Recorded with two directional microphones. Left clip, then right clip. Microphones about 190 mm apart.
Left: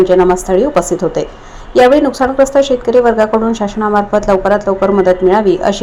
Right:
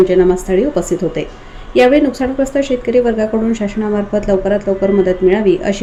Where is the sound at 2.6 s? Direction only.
25° left (ahead or behind).